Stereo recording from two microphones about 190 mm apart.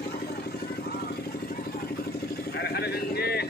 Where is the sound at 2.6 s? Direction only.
55° left (ahead or behind).